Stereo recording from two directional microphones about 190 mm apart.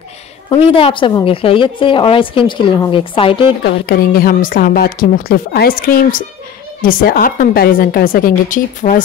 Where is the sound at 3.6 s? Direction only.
50° left (ahead or behind).